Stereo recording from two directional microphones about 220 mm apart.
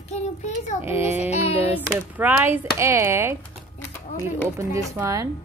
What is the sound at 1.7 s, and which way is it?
Speech, 10° right (ahead or behind).